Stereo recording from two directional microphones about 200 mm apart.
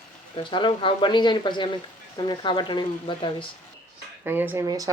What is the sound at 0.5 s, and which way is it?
Speech, 25° left (ahead or behind).